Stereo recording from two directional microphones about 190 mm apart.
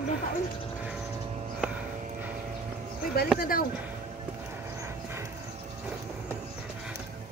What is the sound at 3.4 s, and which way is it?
Speech, 50° left (ahead or behind).